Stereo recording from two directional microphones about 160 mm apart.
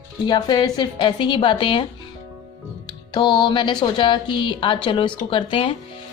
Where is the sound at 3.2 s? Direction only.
30° left (ahead or behind).